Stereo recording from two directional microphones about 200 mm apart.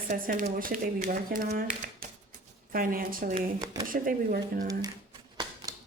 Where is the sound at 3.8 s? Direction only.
45° right (ahead or behind).